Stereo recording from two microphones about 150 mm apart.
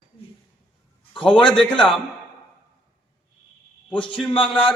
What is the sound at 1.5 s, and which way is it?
Speech, 5° left (ahead or behind).